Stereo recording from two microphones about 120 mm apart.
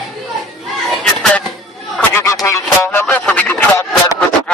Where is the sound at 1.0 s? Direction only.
10° left (ahead or behind).